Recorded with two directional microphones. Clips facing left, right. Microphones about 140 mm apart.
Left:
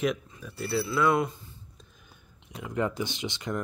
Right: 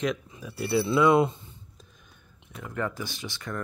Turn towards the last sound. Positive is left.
turn(degrees=20)  # may be behind; listen again after turning